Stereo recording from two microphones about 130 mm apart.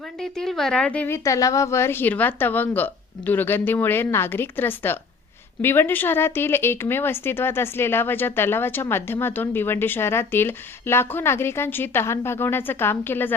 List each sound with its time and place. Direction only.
0.2 s speech: 5° left (ahead or behind)